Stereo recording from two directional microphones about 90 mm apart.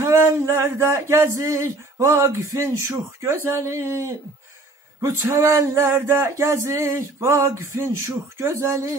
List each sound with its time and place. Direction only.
0.0 s speech: 35° right (ahead or behind)